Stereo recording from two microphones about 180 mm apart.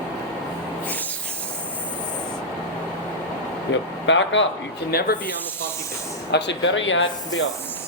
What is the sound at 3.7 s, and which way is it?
Speech, 90° left.